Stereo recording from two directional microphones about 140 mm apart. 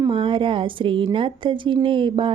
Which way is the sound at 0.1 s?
40° right (ahead or behind).